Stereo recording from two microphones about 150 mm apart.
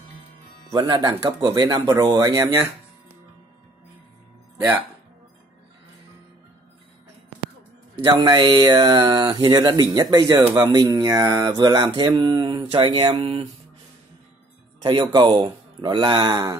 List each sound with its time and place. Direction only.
0.7 s speech: 30° right (ahead or behind)
8.0 s speech: 25° right (ahead or behind)
14.8 s speech: 30° right (ahead or behind)